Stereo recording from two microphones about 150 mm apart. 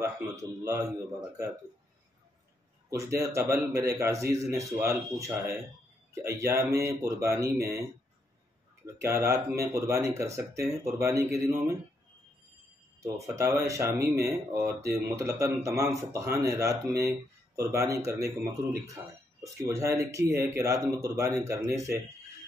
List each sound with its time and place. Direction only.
0.0 s speech: 20° right (ahead or behind)
2.9 s speech: 20° right (ahead or behind)
9.0 s speech: 20° right (ahead or behind)
13.0 s speech: 20° right (ahead or behind)